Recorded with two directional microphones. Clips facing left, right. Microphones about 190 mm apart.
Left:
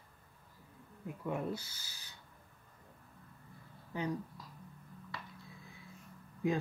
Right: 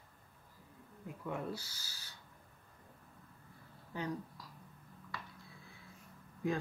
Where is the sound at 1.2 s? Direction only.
20° left (ahead or behind).